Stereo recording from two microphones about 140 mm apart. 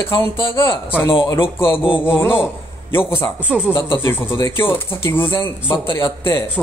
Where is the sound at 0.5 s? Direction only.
15° left (ahead or behind).